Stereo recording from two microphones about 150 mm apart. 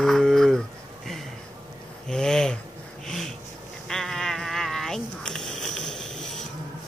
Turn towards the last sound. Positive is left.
turn(degrees=5)  # may be behind; listen again after turning